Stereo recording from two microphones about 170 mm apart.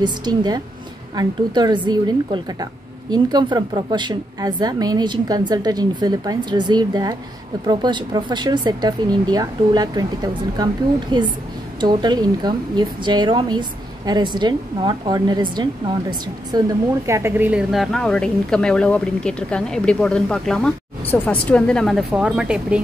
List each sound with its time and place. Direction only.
0.0 s a woman's voice: 25° right (ahead or behind); by 22.8 s 5° right (ahead or behind)